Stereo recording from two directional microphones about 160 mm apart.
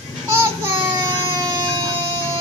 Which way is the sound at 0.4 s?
20° right (ahead or behind).